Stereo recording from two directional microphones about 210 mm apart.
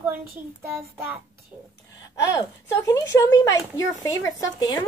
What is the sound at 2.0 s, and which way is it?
Speech, 15° left (ahead or behind).